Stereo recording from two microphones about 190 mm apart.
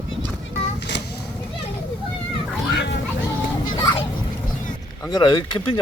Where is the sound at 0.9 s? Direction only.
65° left (ahead or behind).